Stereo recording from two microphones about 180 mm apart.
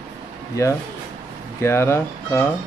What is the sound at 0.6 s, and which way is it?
Speech, 15° left (ahead or behind).